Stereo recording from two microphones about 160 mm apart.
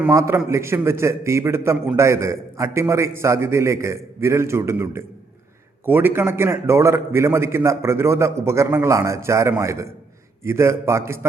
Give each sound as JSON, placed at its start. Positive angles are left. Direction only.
{"t": 0.1, "sound": "a man's voice", "side_deg": -15}